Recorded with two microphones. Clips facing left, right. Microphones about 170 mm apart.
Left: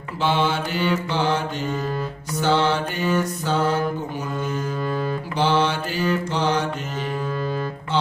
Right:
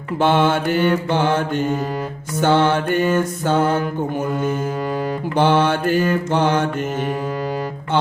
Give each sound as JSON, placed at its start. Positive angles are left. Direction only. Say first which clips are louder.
{"t": 0.2, "sound": "mantra", "louder": "right 5 dB", "side_deg": -55}
{"t": 2.4, "sound": "music", "louder": "right 4 dB", "side_deg": -55}
{"t": 5.4, "sound": "mantra", "louder": "right 5 dB", "side_deg": -55}